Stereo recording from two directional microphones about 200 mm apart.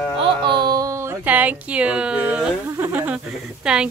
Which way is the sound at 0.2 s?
25° right (ahead or behind).